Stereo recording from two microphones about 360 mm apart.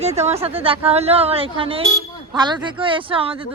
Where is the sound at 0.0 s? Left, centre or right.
Centre.